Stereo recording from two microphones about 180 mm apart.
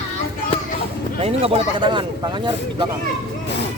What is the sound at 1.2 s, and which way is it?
Speech, 35° right (ahead or behind).